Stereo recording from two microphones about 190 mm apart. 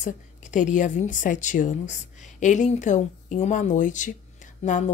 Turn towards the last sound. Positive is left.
turn(degrees=40)  # may be behind; listen again after turning